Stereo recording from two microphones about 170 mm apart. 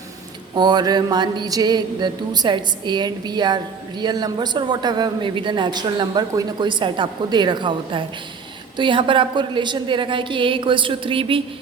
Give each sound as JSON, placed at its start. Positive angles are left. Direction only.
{"t": 0.5, "sound": "mantra", "side_deg": -25}